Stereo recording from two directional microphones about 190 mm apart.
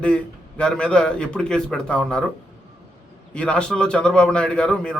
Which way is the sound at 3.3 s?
5° left (ahead or behind).